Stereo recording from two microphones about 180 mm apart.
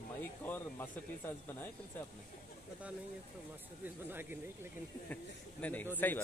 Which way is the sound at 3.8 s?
10° right (ahead or behind).